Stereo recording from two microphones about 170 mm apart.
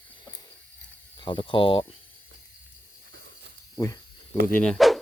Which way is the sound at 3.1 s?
85° right.